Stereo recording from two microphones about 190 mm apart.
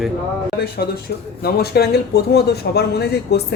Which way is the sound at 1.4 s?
55° left (ahead or behind).